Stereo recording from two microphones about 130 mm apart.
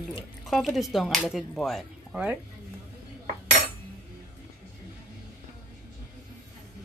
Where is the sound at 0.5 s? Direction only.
Centre (ahead or behind).